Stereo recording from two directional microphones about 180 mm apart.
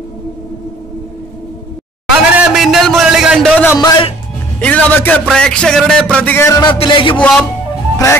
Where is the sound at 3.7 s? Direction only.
25° left (ahead or behind).